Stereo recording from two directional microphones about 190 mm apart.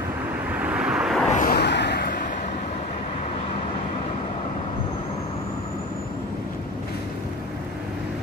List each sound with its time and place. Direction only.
0.6 s vehicle: 5° right (ahead or behind)
1.3 s a sound: 45° left (ahead or behind)
1.6 s vehicle: 65° left (ahead or behind)